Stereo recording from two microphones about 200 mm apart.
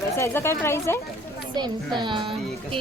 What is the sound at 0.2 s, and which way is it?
Speech, 10° left (ahead or behind).